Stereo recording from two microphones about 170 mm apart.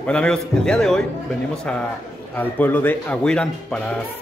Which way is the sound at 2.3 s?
10° left (ahead or behind).